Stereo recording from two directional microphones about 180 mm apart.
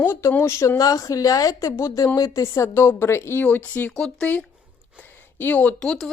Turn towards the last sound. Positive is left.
turn(degrees=5)  # may be behind; listen again after turning